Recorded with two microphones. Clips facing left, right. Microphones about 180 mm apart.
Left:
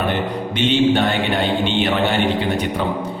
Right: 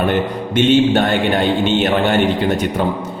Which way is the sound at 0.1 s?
45° right (ahead or behind).